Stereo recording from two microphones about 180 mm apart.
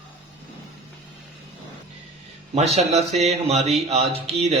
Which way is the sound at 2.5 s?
40° right (ahead or behind).